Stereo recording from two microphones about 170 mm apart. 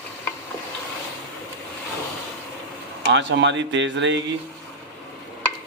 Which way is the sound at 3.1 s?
90° right.